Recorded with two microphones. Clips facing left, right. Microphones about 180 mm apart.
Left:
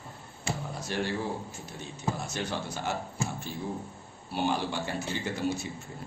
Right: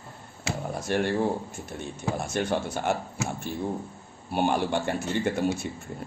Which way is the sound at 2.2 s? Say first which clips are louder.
Right 7 dB; 50° right (ahead or behind).